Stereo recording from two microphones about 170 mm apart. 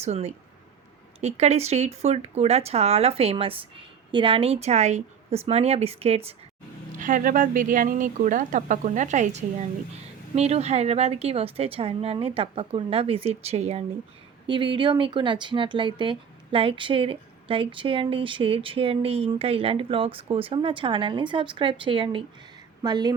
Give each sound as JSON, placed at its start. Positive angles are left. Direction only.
{"t": 0.0, "sound": "speech", "side_deg": -40}
{"t": 6.9, "sound": "a woman's voice", "side_deg": -50}